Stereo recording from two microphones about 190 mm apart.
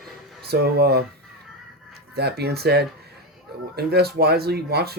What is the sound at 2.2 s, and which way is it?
Speech, 60° right (ahead or behind).